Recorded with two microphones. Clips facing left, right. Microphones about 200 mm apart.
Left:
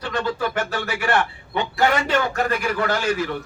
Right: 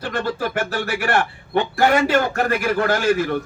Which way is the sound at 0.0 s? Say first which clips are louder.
Right 1 dB; 50° right (ahead or behind).